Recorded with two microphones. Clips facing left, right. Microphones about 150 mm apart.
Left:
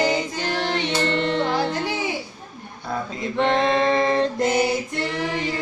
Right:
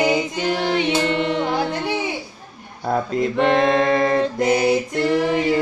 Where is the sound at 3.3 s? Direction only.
5° right (ahead or behind).